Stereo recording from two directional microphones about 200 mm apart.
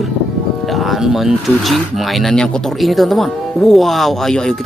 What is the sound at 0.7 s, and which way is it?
Speech, centre (ahead or behind).